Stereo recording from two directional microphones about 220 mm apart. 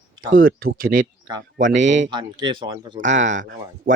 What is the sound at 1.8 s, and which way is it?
Speech, 55° right (ahead or behind).